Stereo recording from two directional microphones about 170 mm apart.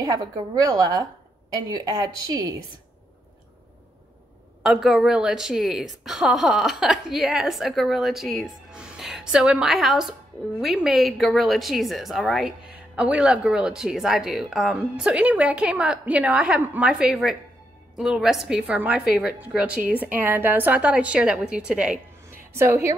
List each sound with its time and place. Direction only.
0.0 s a woman's voice: 20° right (ahead or behind)
4.6 s a woman's voice: centre (ahead or behind)